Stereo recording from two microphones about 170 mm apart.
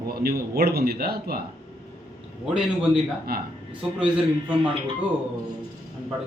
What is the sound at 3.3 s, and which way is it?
Speech, 65° right (ahead or behind).